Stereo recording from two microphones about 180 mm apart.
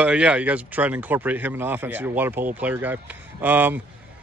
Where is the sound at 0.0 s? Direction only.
5° right (ahead or behind).